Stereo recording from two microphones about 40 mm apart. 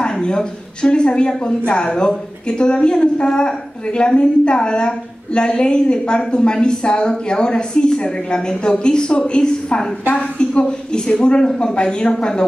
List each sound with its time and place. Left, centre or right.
0.0 s a woman's voice: left